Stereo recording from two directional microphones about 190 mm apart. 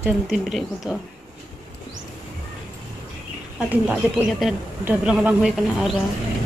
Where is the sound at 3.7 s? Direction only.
5° right (ahead or behind).